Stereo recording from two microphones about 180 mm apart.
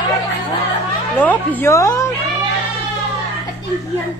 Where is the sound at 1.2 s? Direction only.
10° left (ahead or behind).